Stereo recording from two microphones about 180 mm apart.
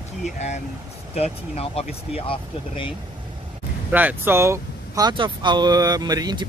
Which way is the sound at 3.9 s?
10° right (ahead or behind).